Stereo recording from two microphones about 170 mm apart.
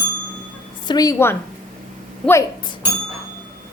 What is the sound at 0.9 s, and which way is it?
Speech, 20° left (ahead or behind).